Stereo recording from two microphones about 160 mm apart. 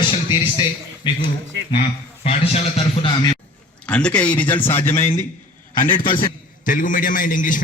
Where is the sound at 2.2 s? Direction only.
40° left (ahead or behind).